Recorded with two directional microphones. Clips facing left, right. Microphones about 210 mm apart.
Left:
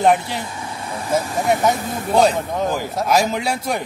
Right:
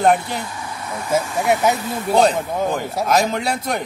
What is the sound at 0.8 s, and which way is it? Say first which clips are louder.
Speech: even; 30° left (ahead or behind).